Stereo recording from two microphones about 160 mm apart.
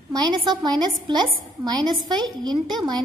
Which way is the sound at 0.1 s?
25° right (ahead or behind).